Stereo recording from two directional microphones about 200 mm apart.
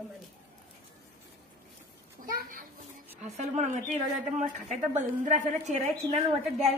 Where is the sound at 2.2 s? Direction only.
45° right (ahead or behind).